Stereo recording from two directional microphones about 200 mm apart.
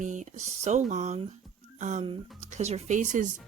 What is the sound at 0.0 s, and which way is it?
A woman's voice, 40° right (ahead or behind).